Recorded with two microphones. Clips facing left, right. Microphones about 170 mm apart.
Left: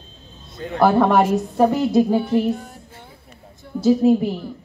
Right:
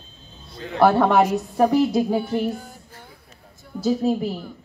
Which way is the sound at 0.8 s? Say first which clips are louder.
Left 1 dB; centre (ahead or behind).